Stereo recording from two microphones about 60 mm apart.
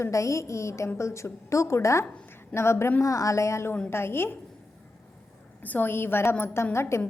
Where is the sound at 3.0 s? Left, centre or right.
Left.